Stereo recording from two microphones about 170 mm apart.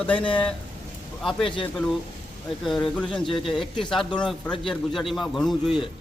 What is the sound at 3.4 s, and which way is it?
A man's voice, centre (ahead or behind).